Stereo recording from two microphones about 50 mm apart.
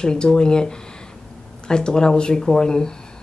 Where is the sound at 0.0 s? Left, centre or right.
Centre.